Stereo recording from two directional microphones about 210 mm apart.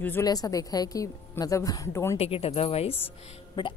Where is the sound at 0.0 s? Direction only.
15° left (ahead or behind).